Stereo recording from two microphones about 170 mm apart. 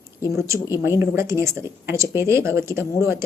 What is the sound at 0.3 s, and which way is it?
A woman's voice, 15° right (ahead or behind).